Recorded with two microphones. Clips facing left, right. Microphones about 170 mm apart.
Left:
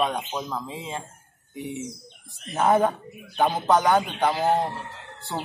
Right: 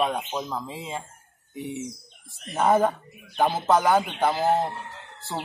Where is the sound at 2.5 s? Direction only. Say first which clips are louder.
Even; centre (ahead or behind).